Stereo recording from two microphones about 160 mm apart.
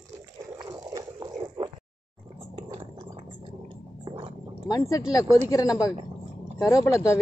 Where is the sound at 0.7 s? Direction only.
25° right (ahead or behind).